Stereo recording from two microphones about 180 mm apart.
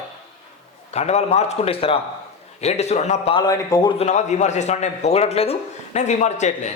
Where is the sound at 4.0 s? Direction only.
40° left (ahead or behind).